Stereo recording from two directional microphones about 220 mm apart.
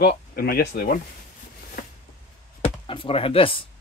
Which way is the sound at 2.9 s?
25° left (ahead or behind).